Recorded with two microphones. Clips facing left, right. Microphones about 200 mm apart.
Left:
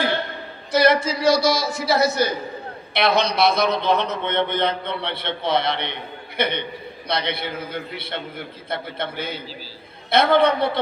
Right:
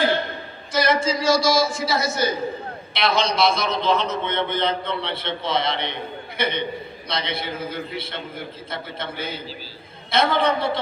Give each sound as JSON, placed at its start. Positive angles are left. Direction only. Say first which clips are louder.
{"t": 0.7, "sound": "a man's voice", "louder": "left 3 dB", "side_deg": 60}